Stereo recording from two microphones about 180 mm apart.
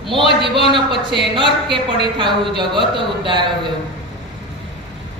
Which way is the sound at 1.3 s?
25° right (ahead or behind).